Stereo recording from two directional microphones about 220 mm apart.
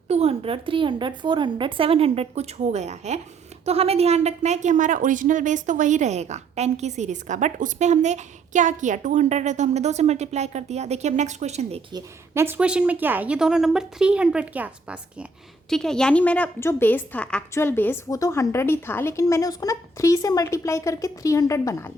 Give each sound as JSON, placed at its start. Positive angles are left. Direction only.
{"t": 0.1, "sound": "a woman's voice", "side_deg": -25}